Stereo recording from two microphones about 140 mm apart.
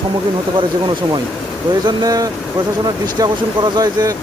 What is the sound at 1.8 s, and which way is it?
Speech, 25° right (ahead or behind).